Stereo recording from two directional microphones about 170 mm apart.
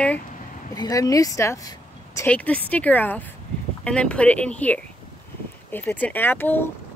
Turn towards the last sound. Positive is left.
turn(degrees=10)  # may be behind; listen again after turning